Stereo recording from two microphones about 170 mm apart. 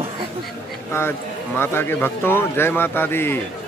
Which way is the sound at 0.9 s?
15° left (ahead or behind).